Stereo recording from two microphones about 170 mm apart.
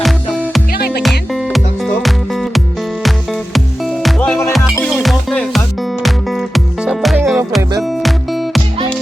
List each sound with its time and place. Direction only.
0.0 s music: centre (ahead or behind)
0.7 s music: 65° left (ahead or behind)
1.3 s music: centre (ahead or behind)
4.5 s music: centre (ahead or behind)